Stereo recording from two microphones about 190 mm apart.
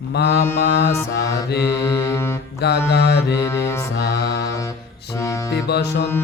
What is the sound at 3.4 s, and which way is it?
Mantra, 15° left (ahead or behind).